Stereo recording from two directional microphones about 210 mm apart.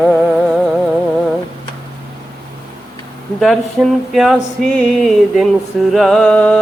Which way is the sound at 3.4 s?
Centre (ahead or behind).